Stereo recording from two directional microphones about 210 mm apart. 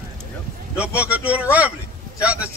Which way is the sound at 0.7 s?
5° right (ahead or behind).